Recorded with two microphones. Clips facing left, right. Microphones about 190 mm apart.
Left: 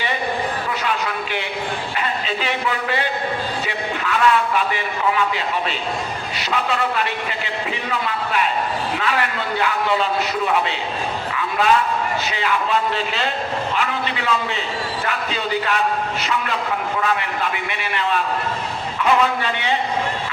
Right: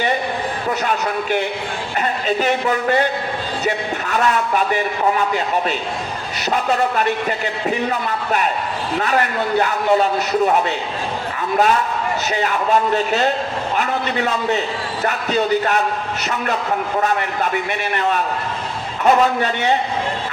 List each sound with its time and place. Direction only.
0.9 s a man's voice: 45° right (ahead or behind)
6.5 s a man's voice: 45° right (ahead or behind)
17.0 s a man's voice: 40° right (ahead or behind)